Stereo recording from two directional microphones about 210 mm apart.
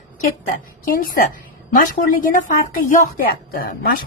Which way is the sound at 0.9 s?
40° left (ahead or behind).